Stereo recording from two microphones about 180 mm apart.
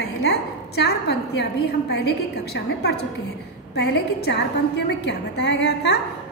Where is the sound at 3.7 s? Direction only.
70° left (ahead or behind).